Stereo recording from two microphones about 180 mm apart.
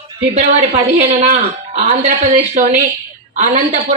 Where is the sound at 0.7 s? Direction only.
40° right (ahead or behind).